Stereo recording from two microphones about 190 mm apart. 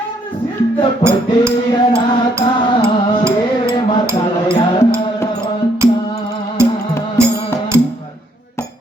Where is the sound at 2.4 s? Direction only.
25° left (ahead or behind).